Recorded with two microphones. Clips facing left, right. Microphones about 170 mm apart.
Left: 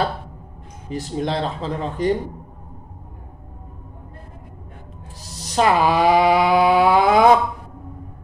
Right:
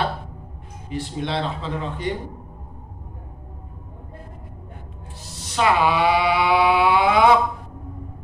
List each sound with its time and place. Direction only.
0.8 s speech: 40° left (ahead or behind)
5.3 s mantra: 40° left (ahead or behind)